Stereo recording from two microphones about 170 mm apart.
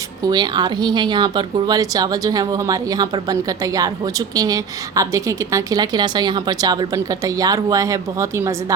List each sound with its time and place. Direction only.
0.3 s a woman's voice: 25° right (ahead or behind)